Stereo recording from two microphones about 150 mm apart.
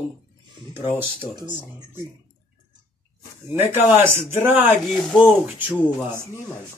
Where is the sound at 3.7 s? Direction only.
15° right (ahead or behind).